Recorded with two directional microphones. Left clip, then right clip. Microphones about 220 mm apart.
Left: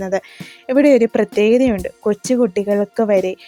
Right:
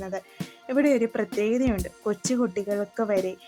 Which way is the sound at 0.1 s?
40° left (ahead or behind).